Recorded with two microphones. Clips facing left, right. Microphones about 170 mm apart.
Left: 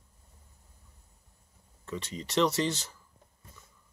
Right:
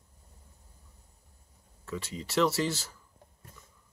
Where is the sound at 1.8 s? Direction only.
5° right (ahead or behind).